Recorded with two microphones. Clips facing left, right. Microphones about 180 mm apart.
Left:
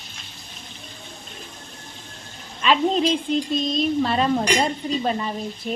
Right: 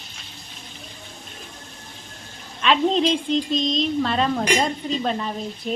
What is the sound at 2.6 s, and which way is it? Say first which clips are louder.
Speech: even; centre (ahead or behind).